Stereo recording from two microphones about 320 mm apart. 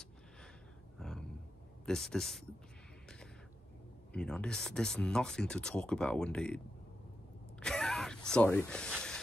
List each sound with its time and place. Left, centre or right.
0.9 s a sound: centre
1.9 s speech: centre
4.1 s speech: centre
7.6 s gasp: centre